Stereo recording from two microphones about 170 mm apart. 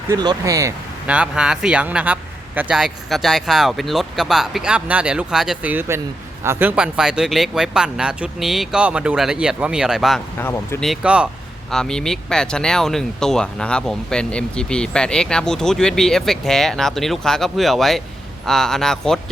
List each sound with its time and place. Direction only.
0.1 s speech: 20° right (ahead or behind)
1.0 s speech: 5° right (ahead or behind)
10.3 s speech: 15° left (ahead or behind)
10.8 s speech: centre (ahead or behind)